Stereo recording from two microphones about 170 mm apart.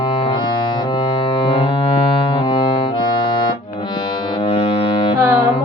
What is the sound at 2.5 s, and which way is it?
Music, 30° left (ahead or behind).